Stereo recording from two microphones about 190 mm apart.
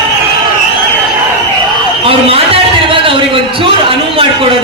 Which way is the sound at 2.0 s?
30° right (ahead or behind).